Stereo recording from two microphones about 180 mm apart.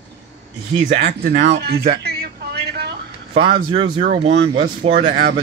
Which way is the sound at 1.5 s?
65° right (ahead or behind).